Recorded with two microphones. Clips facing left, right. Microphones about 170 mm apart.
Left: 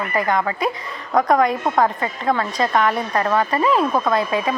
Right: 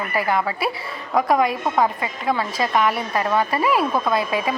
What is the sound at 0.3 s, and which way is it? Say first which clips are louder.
A woman's voice: left 2 dB; 10° right (ahead or behind).